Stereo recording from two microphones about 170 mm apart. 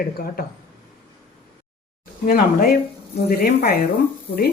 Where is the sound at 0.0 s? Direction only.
60° left (ahead or behind).